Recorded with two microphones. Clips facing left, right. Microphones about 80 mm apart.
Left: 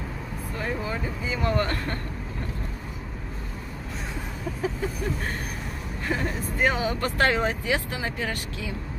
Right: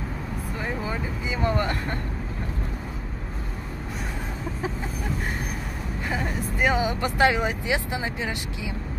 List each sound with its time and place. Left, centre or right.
0.6 s speech: centre
6.0 s speech: centre